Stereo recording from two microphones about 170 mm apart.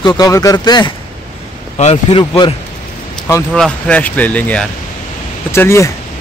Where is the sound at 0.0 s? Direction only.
20° left (ahead or behind).